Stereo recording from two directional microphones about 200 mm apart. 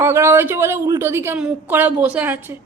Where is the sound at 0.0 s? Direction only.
10° right (ahead or behind).